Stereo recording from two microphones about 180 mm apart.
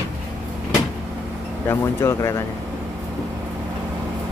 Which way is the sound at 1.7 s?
15° left (ahead or behind).